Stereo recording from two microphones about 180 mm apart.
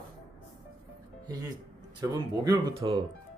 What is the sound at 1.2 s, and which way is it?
Speech, 20° right (ahead or behind).